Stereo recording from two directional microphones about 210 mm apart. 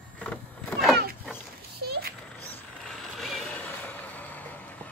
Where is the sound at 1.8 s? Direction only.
50° right (ahead or behind).